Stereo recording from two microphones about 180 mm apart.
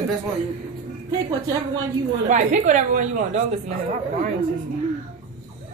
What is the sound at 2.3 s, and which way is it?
A woman's voice, 40° right (ahead or behind).